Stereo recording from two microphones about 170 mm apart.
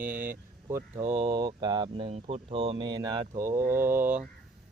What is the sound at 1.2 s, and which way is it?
Speech, 25° right (ahead or behind).